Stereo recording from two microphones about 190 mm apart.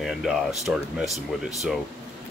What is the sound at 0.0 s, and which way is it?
Speech, centre (ahead or behind).